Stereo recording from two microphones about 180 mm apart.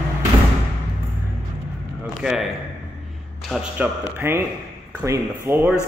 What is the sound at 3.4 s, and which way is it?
Speech, 5° right (ahead or behind).